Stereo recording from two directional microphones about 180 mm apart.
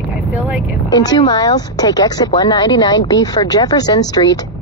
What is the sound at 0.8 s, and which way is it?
Speech, 20° left (ahead or behind).